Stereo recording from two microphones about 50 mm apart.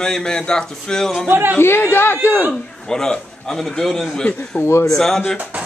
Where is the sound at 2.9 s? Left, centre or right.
Centre.